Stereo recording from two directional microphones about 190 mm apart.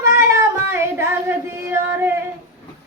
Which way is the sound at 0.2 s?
15° right (ahead or behind).